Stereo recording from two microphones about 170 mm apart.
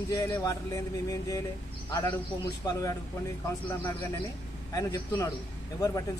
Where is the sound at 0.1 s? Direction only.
20° left (ahead or behind).